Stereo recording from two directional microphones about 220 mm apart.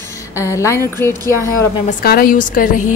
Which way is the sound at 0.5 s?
15° left (ahead or behind).